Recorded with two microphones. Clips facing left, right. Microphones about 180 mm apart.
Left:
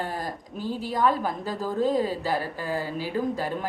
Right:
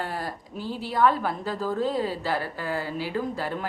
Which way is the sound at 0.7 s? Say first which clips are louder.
Right 2 dB; 40° left (ahead or behind).